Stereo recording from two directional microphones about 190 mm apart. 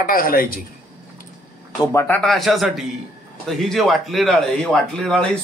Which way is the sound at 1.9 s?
10° left (ahead or behind).